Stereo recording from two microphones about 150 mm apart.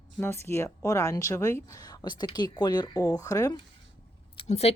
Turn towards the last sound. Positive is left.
turn(degrees=45)  # may be behind; listen again after turning